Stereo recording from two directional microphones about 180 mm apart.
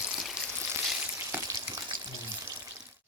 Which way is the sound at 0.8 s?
5° right (ahead or behind).